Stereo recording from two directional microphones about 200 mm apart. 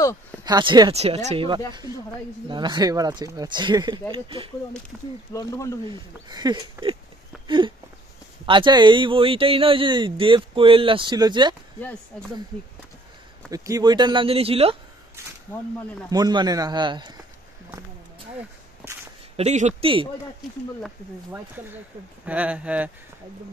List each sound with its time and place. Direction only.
0.4 s speech: 20° right (ahead or behind)
5.3 s speech: 15° left (ahead or behind)
6.2 s speech: 20° right (ahead or behind)
7.4 s a sound: 25° right (ahead or behind)
8.5 s speech: 25° right (ahead or behind)
13.5 s speech: 15° right (ahead or behind)
16.1 s speech: 20° right (ahead or behind)
19.3 s speech: 35° right (ahead or behind)
21.3 s speech: 10° right (ahead or behind)